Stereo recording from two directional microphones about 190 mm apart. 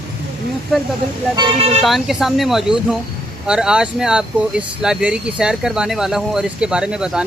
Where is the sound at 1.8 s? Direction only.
Centre (ahead or behind).